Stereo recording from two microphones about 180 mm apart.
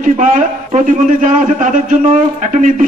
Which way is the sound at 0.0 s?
45° right (ahead or behind).